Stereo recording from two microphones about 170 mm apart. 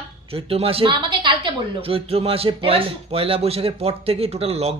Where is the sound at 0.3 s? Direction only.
35° right (ahead or behind).